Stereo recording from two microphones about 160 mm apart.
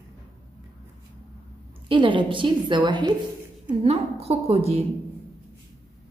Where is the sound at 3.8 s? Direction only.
40° right (ahead or behind).